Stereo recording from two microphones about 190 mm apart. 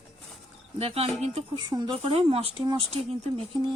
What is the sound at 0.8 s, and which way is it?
A woman's voice, 30° right (ahead or behind).